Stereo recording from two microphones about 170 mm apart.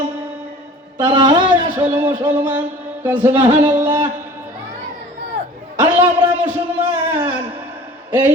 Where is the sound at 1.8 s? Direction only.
10° right (ahead or behind).